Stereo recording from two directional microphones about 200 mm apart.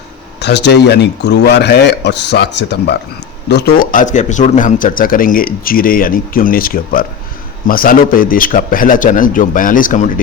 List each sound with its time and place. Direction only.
0.3 s speech: 60° left (ahead or behind)
3.5 s speech: 45° left (ahead or behind)